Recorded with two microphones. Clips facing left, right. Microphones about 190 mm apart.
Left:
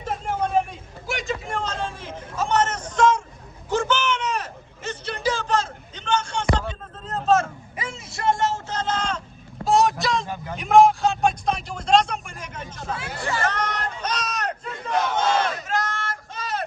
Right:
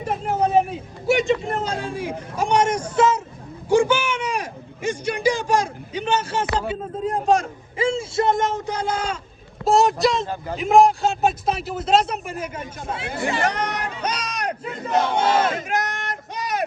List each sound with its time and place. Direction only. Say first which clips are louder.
0.7 s a man's voice: right 11 dB; centre (ahead or behind)
3.7 s a sound: right 5 dB; 10° right (ahead or behind)
7.8 s a man's voice: right 12 dB; 30° right (ahead or behind); by 12.6 s 5° right (ahead or behind)
12.9 s speech: right 3 dB; 20° right (ahead or behind)
14.8 s speech: right 3 dB; 25° right (ahead or behind)
15.4 s crowd: right 3 dB; 20° right (ahead or behind)